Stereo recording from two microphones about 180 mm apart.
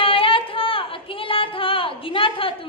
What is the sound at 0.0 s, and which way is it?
Singing, 30° left (ahead or behind).